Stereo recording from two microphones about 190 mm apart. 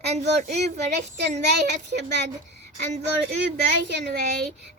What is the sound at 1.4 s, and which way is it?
Speech, 60° right (ahead or behind).